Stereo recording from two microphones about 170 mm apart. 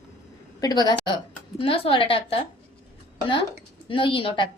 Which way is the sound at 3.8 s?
30° left (ahead or behind).